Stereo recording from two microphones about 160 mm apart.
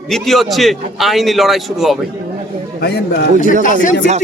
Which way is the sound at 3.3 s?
55° left (ahead or behind).